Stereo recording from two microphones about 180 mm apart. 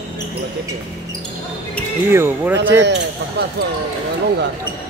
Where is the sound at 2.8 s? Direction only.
75° right (ahead or behind).